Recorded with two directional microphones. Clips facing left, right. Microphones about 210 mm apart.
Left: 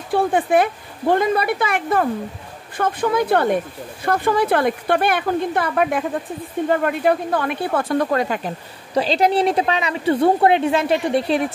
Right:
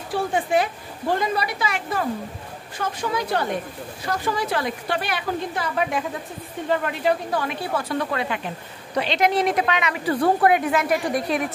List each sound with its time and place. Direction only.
0.1 s a woman's voice: 55° left (ahead or behind); by 11.4 s 30° left (ahead or behind)